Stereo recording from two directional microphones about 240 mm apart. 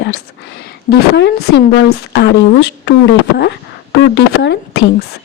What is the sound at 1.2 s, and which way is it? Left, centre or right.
A woman's voice, left.